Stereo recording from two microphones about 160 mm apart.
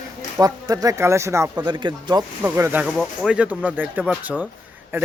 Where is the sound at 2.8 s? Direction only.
Centre (ahead or behind).